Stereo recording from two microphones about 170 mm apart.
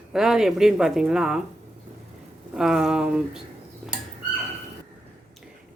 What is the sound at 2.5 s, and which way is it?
Speech, centre (ahead or behind).